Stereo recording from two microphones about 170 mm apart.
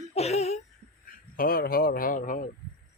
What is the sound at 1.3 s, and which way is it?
Speech, 60° left (ahead or behind).